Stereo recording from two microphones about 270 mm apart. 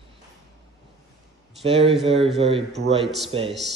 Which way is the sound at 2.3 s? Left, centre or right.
Right.